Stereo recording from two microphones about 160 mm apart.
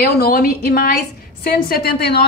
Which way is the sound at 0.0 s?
65° left (ahead or behind).